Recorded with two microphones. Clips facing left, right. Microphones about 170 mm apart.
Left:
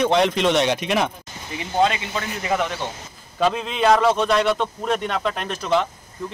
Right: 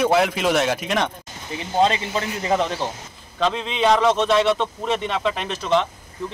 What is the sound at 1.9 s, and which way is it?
Speech, 30° right (ahead or behind).